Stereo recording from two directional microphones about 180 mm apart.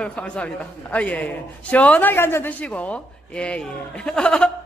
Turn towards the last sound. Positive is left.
turn(degrees=5)  # may be behind; listen again after turning